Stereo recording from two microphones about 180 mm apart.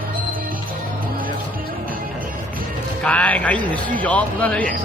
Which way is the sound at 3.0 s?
5° left (ahead or behind).